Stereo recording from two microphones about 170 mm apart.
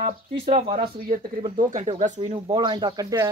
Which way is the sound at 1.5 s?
45° right (ahead or behind).